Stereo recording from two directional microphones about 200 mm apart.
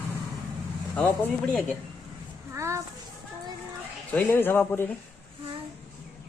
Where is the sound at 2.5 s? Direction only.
15° right (ahead or behind).